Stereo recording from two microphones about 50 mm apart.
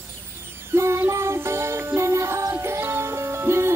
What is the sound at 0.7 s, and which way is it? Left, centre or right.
Music, right.